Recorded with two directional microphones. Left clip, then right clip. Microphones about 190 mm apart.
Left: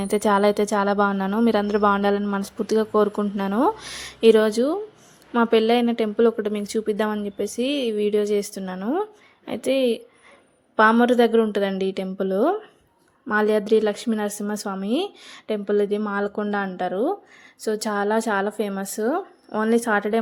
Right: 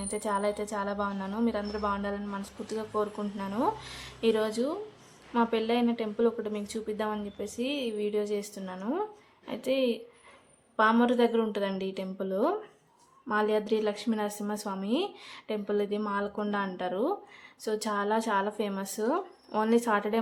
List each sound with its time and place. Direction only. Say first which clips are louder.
0.0 s a woman's voice: left 11 dB; 40° left (ahead or behind); by 20.1 s 25° left (ahead or behind)